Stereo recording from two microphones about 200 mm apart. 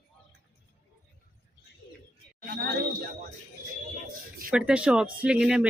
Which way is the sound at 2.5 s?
60° right (ahead or behind).